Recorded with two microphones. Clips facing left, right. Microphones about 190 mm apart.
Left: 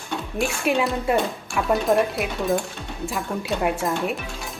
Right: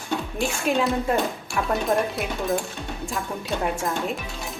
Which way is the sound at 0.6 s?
5° left (ahead or behind).